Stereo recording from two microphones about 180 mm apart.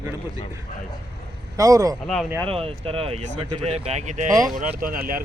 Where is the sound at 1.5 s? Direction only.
20° right (ahead or behind).